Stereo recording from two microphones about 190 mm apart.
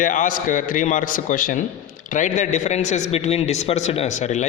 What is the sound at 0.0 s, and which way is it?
A man's voice, 45° left (ahead or behind).